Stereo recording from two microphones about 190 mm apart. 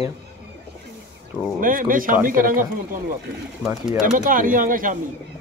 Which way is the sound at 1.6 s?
45° right (ahead or behind).